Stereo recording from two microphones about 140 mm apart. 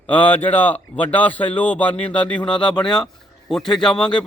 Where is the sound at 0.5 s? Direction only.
10° left (ahead or behind).